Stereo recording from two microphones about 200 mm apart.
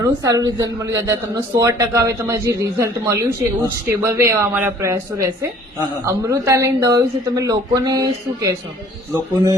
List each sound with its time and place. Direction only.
0.0 s a man's voice: 15° right (ahead or behind)